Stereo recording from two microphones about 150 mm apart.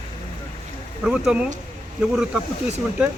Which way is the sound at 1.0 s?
5° right (ahead or behind).